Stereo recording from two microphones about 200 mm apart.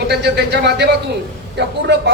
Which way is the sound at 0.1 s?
55° right (ahead or behind).